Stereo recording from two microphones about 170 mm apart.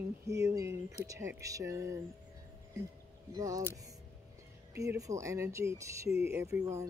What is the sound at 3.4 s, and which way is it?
Speech, 20° right (ahead or behind).